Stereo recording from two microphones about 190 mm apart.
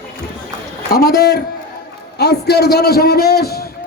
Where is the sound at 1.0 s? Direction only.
55° left (ahead or behind).